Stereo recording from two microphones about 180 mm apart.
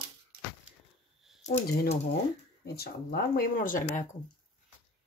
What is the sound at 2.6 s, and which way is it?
Speech, 60° left (ahead or behind).